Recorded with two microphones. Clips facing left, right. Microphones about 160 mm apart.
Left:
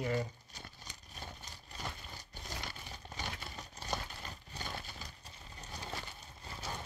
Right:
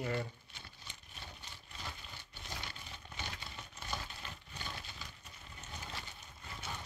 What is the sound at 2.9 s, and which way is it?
Coin, 40° left (ahead or behind).